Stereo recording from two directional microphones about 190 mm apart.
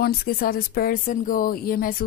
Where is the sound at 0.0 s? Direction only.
55° left (ahead or behind).